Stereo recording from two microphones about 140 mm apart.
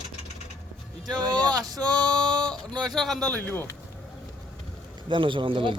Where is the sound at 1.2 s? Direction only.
30° right (ahead or behind).